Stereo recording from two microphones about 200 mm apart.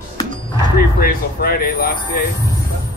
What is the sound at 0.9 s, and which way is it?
Speech, 50° left (ahead or behind).